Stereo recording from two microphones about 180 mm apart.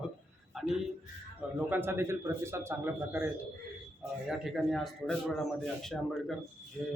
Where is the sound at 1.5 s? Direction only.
10° right (ahead or behind).